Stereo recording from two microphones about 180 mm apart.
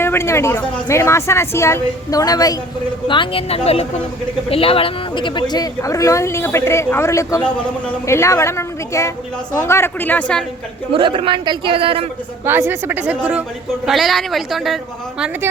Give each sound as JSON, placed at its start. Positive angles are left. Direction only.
{"t": 0.0, "sound": "speech", "side_deg": 15}
{"t": 10.9, "sound": "a man's voice", "side_deg": -30}
{"t": 12.5, "sound": "a woman's voice", "side_deg": -10}